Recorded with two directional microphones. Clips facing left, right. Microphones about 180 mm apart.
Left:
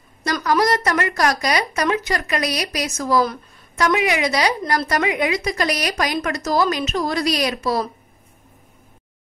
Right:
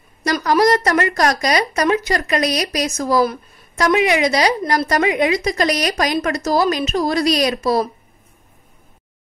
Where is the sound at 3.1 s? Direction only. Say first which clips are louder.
Right 2 dB; 15° right (ahead or behind).